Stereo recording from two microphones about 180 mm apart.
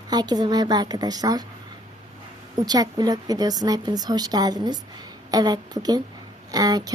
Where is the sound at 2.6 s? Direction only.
20° right (ahead or behind).